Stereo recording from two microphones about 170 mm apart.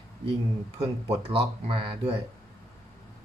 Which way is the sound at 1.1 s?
35° right (ahead or behind).